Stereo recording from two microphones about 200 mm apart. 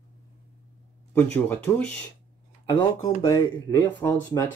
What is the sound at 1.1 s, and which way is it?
Speech, 10° left (ahead or behind).